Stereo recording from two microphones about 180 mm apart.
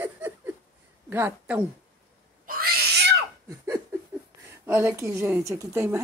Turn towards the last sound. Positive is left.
turn(degrees=-15)  # may be behind; listen again after turning